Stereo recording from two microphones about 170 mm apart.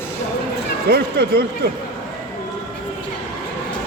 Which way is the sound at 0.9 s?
70° right (ahead or behind).